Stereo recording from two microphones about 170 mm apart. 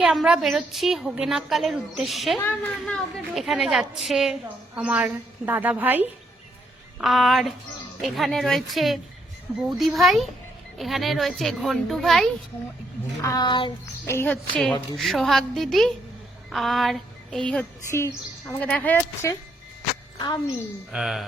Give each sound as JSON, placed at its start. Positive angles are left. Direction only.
{"t": 0.0, "sound": "a woman's voice", "side_deg": 0}
{"t": 7.0, "sound": "a woman's voice", "side_deg": 0}
{"t": 13.2, "sound": "a sound", "side_deg": 25}
{"t": 14.1, "sound": "a woman's voice", "side_deg": 10}
{"t": 16.5, "sound": "child singing", "side_deg": 0}
{"t": 17.5, "sound": "speech", "side_deg": 10}
{"t": 20.1, "sound": "a woman's voice", "side_deg": 25}
{"t": 20.9, "sound": "a woman's voice", "side_deg": 0}